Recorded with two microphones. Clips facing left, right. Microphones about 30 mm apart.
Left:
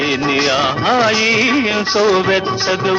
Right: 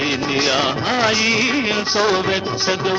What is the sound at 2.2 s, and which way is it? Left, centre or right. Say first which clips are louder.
Music: left 5 dB; centre.